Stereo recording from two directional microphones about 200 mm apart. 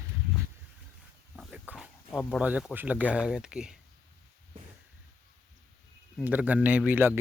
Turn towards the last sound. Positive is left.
turn(degrees=-10)  # may be behind; listen again after turning